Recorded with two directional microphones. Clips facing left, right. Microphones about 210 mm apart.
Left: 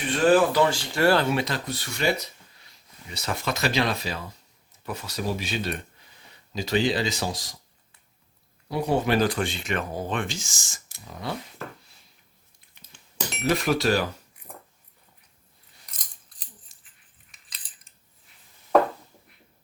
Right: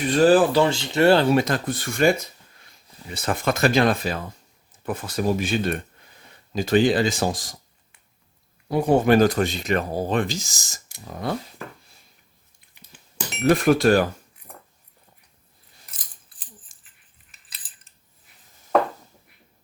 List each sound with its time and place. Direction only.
0.1 s speech: 35° right (ahead or behind)
1.4 s speech: 50° right (ahead or behind)
8.7 s speech: 50° right (ahead or behind)
11.0 s speech: 50° right (ahead or behind)
13.4 s speech: 50° right (ahead or behind)
16.7 s dog: 50° right (ahead or behind)
17.3 s keys jangling: 5° right (ahead or behind)